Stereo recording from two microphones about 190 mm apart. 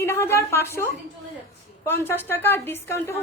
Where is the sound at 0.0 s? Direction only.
15° left (ahead or behind).